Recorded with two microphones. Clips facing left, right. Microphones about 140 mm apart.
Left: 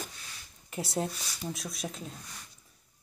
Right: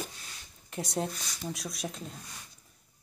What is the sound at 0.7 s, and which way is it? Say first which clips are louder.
Speech: even; 5° left (ahead or behind).